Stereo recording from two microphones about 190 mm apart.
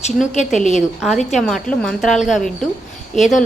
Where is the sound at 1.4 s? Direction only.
Centre (ahead or behind).